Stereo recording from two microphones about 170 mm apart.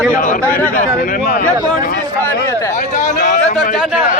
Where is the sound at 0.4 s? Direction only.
10° left (ahead or behind).